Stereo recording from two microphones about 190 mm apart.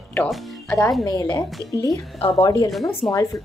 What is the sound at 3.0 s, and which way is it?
Speech, centre (ahead or behind).